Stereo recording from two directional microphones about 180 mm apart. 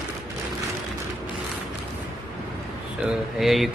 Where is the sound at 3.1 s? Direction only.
Centre (ahead or behind).